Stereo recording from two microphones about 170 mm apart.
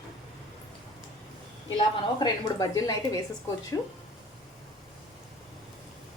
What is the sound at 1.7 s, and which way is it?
Speech, 25° left (ahead or behind).